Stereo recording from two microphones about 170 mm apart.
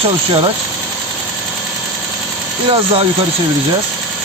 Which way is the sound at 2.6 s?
30° right (ahead or behind).